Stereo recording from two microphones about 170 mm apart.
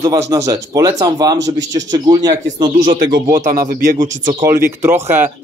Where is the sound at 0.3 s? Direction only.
20° right (ahead or behind).